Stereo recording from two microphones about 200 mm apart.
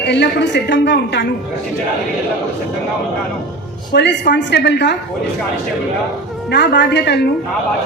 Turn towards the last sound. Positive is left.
turn(degrees=55)  # may be behind; listen again after turning